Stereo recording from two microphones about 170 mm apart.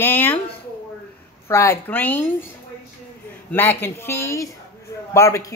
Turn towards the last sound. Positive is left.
turn(degrees=15)  # may be behind; listen again after turning